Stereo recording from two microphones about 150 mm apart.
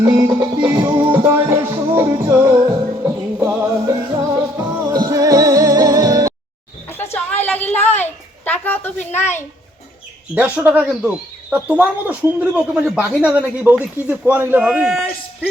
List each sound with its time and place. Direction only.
0.0 s music: 25° right (ahead or behind)
7.4 s a sound: 10° left (ahead or behind)
10.3 s speech: 10° right (ahead or behind)